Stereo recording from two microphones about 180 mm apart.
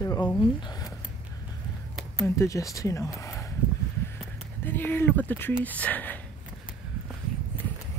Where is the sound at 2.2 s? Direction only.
15° left (ahead or behind).